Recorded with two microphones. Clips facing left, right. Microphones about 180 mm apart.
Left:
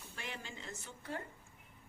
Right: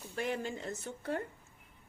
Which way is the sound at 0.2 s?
50° right (ahead or behind).